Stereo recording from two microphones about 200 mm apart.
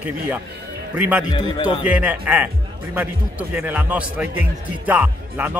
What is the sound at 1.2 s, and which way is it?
Speech, 20° left (ahead or behind).